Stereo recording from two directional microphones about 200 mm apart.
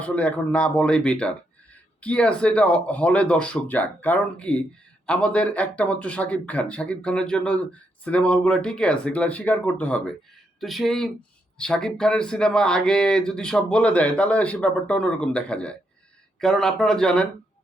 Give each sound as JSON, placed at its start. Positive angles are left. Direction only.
{"t": 0.0, "sound": "speech", "side_deg": 5}